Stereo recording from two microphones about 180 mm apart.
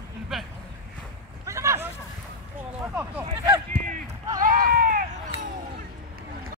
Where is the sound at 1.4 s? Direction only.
15° right (ahead or behind).